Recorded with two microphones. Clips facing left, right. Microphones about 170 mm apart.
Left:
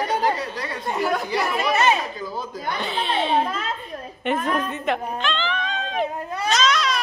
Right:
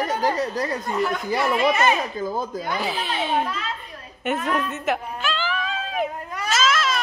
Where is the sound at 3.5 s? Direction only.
50° left (ahead or behind).